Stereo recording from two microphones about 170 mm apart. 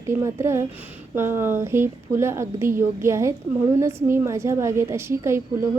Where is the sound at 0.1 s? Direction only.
15° right (ahead or behind).